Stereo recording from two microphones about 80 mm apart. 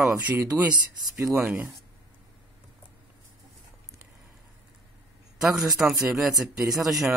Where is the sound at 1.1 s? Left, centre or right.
Right.